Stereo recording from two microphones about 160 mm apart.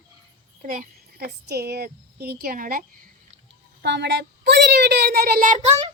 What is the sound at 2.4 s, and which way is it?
Speech, 65° right (ahead or behind).